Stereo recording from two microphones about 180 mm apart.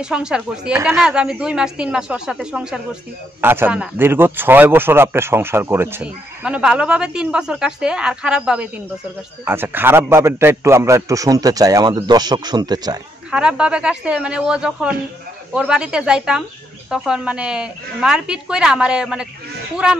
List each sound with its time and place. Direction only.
0.0 s a woman's voice: 5° right (ahead or behind); by 13.0 s 20° right (ahead or behind)
13.3 s a woman's voice: 5° right (ahead or behind)